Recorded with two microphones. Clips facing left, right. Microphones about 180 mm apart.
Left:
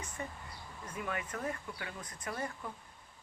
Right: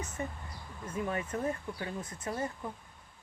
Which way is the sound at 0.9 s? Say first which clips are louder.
Right 5 dB; 30° right (ahead or behind).